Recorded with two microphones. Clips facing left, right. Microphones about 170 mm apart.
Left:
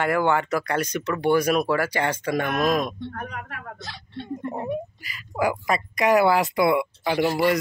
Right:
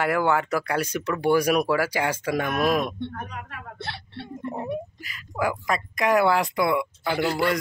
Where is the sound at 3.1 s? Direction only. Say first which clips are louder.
Left 2 dB; 55° left (ahead or behind).